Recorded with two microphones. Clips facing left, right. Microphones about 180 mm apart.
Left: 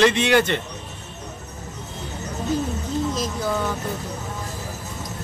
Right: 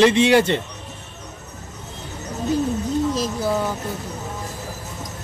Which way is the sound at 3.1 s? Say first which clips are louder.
Right 3 dB; 10° right (ahead or behind).